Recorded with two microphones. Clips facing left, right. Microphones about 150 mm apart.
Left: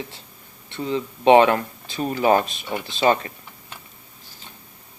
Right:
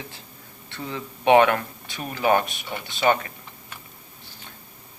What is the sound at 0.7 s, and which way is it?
Speech, 20° left (ahead or behind).